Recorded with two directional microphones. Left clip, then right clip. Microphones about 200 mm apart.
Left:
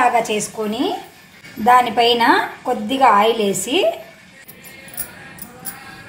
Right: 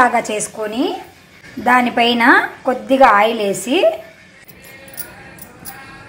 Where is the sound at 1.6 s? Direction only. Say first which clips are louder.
Left 1 dB; 15° right (ahead or behind).